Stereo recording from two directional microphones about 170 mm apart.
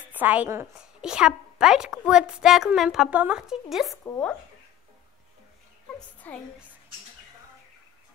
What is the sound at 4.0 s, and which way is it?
Speech, 10° left (ahead or behind).